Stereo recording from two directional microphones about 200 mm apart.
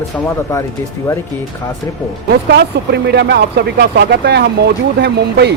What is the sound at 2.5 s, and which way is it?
Speech, 55° right (ahead or behind).